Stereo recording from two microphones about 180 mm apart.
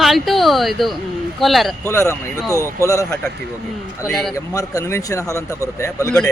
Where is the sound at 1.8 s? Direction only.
15° left (ahead or behind).